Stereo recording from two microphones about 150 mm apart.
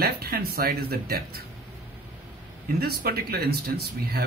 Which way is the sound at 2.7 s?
90° right.